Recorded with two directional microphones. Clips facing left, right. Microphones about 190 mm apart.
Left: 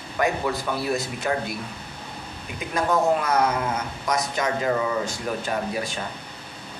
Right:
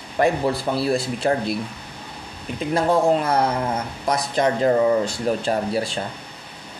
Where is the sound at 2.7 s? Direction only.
30° right (ahead or behind).